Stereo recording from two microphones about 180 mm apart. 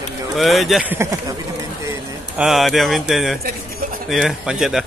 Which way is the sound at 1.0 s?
20° right (ahead or behind).